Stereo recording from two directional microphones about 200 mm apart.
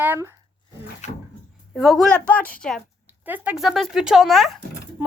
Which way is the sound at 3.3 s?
5° right (ahead or behind).